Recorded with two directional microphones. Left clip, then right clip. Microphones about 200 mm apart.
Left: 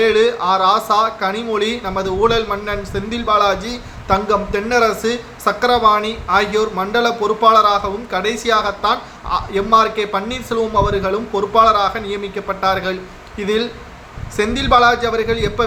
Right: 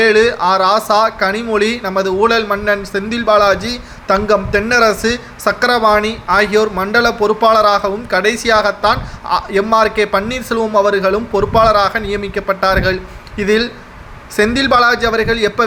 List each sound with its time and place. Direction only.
0.0 s speech: 20° right (ahead or behind)